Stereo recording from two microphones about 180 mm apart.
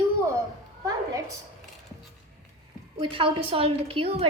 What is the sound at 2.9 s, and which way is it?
A woman's voice, 30° right (ahead or behind).